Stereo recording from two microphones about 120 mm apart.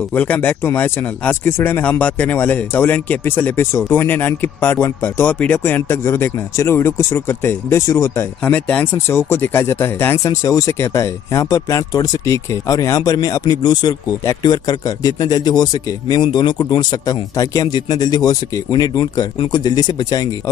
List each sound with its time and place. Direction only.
0.1 s speech: 15° left (ahead or behind)
8.5 s speech: 10° left (ahead or behind)
8.9 s speech: 20° left (ahead or behind)